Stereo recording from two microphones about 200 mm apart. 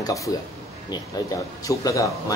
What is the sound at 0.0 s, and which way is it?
Speech, 15° left (ahead or behind).